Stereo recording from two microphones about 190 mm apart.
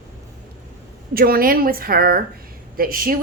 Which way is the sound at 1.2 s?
50° right (ahead or behind).